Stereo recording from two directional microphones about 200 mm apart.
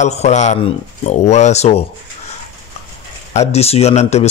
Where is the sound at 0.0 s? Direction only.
35° left (ahead or behind).